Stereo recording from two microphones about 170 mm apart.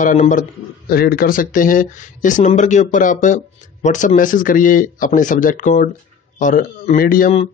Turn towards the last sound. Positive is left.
turn(degrees=55)  # may be behind; listen again after turning